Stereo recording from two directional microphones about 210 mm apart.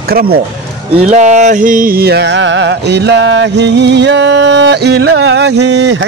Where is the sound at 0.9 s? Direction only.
35° right (ahead or behind).